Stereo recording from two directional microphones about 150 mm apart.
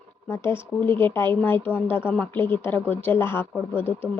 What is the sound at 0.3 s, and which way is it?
A woman's voice, 15° left (ahead or behind).